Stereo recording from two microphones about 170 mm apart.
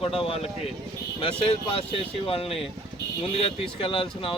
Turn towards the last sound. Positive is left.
turn(degrees=30)  # may be behind; listen again after turning